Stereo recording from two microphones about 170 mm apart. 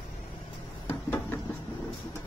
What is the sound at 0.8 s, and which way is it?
Knock, 10° left (ahead or behind).